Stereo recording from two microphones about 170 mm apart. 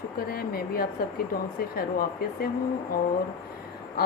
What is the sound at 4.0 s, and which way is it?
Speech, 65° left (ahead or behind).